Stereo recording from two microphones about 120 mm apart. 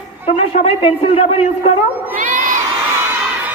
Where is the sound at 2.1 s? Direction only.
90° right.